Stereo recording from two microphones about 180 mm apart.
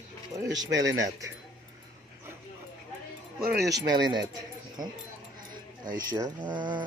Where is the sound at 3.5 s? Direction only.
70° right (ahead or behind).